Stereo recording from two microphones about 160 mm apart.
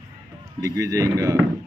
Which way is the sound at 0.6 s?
20° right (ahead or behind).